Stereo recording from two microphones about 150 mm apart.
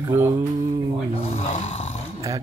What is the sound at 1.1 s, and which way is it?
Speech, 40° left (ahead or behind).